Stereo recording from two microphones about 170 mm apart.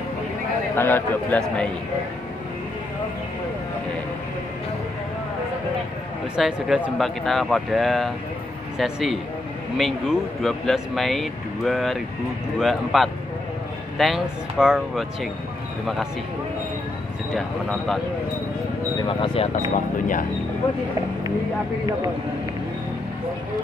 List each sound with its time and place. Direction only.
0.7 s a man's voice: 10° left (ahead or behind)
6.3 s speech: 5° right (ahead or behind)
17.3 s speech: centre (ahead or behind)
19.0 s speech: 35° left (ahead or behind)